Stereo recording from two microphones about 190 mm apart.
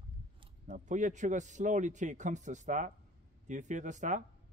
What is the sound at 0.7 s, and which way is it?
A man's voice, 40° right (ahead or behind).